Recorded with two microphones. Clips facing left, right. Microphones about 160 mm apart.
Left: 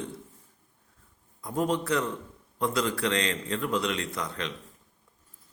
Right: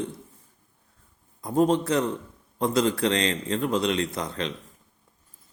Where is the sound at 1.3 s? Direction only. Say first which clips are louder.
Right 6 dB; 25° right (ahead or behind).